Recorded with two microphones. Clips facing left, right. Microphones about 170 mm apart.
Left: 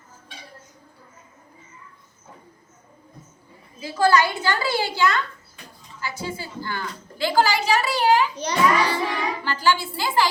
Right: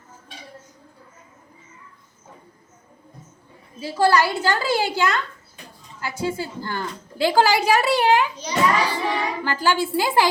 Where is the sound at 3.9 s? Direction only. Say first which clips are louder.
Right 1 dB; 30° right (ahead or behind).